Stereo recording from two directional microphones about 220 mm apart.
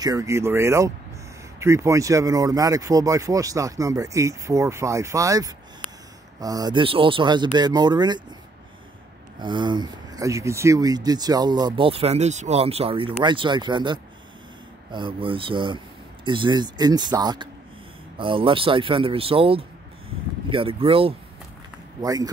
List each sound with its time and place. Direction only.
0.0 s speech: 15° right (ahead or behind)
9.4 s speech: 20° right (ahead or behind)